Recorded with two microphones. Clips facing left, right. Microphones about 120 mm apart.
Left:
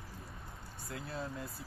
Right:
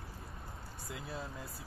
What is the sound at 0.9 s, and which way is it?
Speech, 5° right (ahead or behind).